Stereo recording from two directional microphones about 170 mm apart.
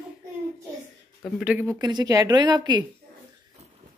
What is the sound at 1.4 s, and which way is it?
Speech, 10° right (ahead or behind).